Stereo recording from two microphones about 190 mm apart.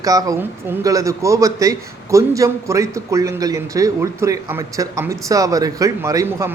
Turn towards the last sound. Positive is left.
turn(degrees=-15)  # may be behind; listen again after turning